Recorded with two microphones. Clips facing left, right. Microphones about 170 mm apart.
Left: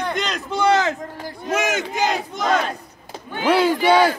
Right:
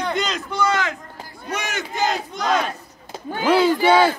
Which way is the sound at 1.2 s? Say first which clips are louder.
Left 7 dB; 90° left.